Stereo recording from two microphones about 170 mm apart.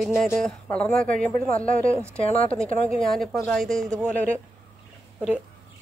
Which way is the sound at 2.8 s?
5° left (ahead or behind).